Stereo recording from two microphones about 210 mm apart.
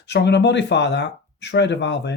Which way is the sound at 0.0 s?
55° left (ahead or behind).